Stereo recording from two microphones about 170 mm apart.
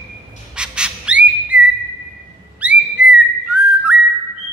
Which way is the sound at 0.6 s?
5° right (ahead or behind).